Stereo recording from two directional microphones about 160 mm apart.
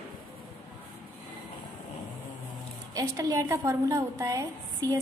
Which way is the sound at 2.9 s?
20° right (ahead or behind).